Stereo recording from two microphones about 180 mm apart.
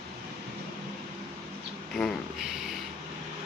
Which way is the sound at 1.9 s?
Centre (ahead or behind).